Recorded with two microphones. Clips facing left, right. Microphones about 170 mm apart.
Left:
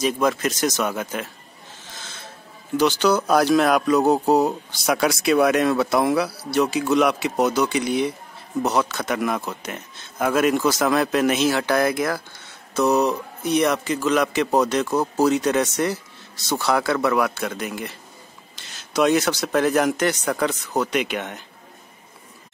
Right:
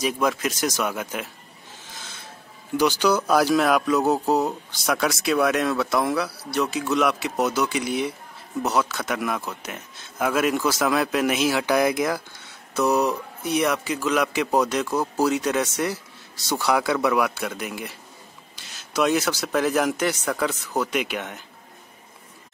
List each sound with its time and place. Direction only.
0.0 s a man's voice: 5° right (ahead or behind)
2.8 s a man's voice: 10° right (ahead or behind)